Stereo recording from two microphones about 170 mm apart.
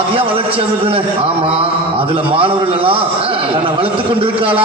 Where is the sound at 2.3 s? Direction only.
30° right (ahead or behind).